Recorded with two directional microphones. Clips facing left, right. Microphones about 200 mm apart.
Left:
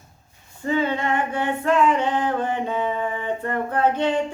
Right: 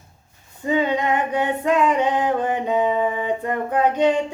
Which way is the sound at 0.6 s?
15° right (ahead or behind).